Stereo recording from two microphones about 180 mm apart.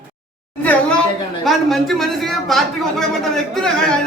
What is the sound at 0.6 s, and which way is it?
A man's voice, 5° left (ahead or behind).